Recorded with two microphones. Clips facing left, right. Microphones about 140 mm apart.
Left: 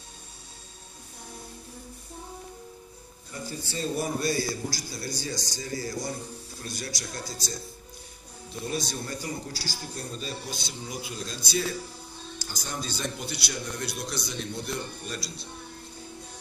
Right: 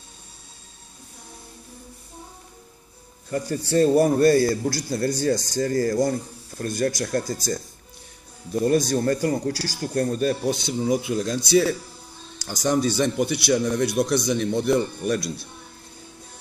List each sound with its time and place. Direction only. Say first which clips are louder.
3.3 s a man's voice: right 12 dB; 70° right (ahead or behind)
12.7 s a man's voice: right 12 dB; 60° right (ahead or behind)